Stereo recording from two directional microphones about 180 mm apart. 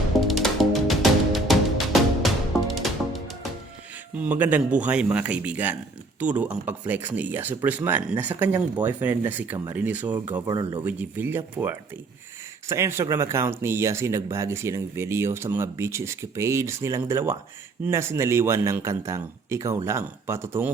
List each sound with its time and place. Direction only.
0.3 s music: centre (ahead or behind)
4.1 s speech: 10° right (ahead or behind)
10.4 s speech: 25° right (ahead or behind)
10.8 s speech: 10° right (ahead or behind)